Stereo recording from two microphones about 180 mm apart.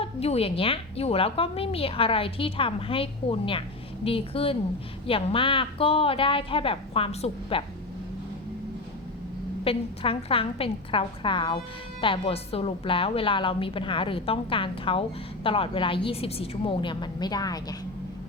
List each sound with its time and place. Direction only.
0.0 s a woman's voice: 35° left (ahead or behind)
9.6 s a woman's voice: 30° left (ahead or behind)